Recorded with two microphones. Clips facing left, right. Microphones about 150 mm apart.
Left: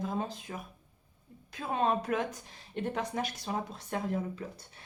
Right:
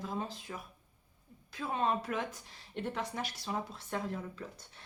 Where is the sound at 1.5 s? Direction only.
20° left (ahead or behind).